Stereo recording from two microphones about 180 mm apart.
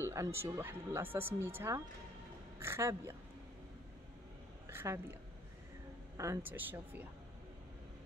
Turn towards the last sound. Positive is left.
turn(degrees=-10)  # may be behind; listen again after turning